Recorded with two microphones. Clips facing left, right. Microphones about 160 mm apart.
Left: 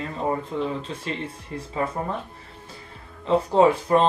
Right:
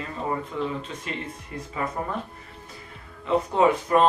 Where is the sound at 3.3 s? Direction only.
30° left (ahead or behind).